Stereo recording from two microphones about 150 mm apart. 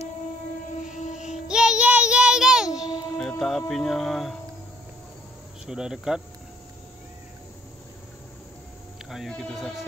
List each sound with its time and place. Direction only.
0.8 s music: 55° left (ahead or behind)
1.3 s child singing: 5° right (ahead or behind)
3.2 s speech: centre (ahead or behind)
5.7 s speech: 5° right (ahead or behind)
9.1 s speech: centre (ahead or behind)